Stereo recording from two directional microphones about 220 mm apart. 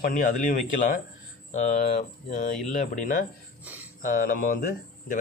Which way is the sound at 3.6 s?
10° right (ahead or behind).